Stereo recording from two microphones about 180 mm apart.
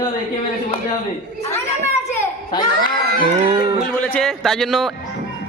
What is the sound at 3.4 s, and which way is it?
Music, 25° right (ahead or behind).